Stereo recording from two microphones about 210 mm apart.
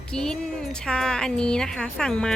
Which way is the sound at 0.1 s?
5° left (ahead or behind).